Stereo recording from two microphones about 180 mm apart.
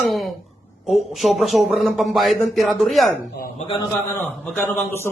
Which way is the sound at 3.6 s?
30° left (ahead or behind).